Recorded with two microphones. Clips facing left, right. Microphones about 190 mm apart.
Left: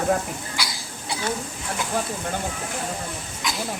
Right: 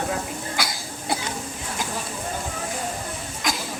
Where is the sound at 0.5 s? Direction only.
50° right (ahead or behind).